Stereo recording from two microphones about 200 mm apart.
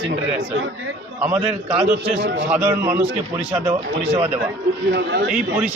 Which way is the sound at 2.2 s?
55° right (ahead or behind).